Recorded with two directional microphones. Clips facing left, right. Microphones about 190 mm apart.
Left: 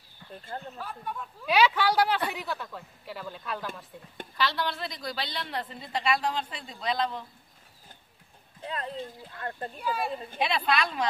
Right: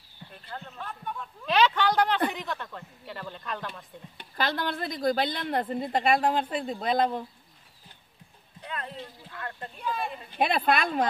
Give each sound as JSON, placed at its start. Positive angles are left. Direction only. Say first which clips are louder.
{"t": 0.7, "sound": "speech", "louder": "even", "side_deg": 5}
{"t": 4.4, "sound": "a woman's voice", "louder": "right 1 dB", "side_deg": -50}
{"t": 8.5, "sound": "a sound", "louder": "left 2 dB", "side_deg": 30}
{"t": 9.8, "sound": "speech", "louder": "left 1 dB", "side_deg": 5}
{"t": 10.4, "sound": "a woman's voice", "louder": "right 3 dB", "side_deg": -55}